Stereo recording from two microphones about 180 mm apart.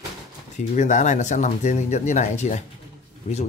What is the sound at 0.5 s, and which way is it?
Speech, 45° left (ahead or behind).